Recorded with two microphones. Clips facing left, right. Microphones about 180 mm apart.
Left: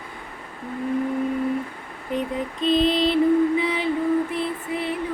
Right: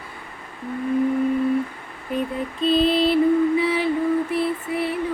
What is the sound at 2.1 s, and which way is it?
Female singing, 20° left (ahead or behind).